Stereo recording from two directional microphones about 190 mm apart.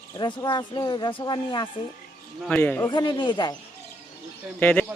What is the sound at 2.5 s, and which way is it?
Speech, 10° left (ahead or behind).